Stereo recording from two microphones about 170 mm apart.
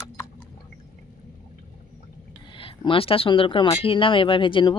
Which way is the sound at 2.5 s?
30° left (ahead or behind).